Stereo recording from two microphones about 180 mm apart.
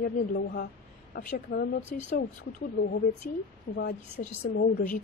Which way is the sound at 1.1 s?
60° left (ahead or behind).